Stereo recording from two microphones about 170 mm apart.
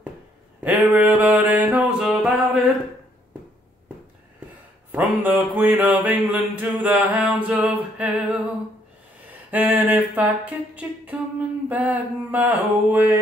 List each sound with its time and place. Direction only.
0.6 s music: 10° right (ahead or behind)
4.9 s mantra: 10° right (ahead or behind)
9.3 s a sound: 10° right (ahead or behind)
11.7 s mantra: 10° right (ahead or behind)